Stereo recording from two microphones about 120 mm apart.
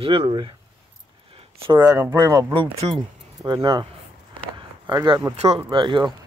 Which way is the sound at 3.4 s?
35° right (ahead or behind).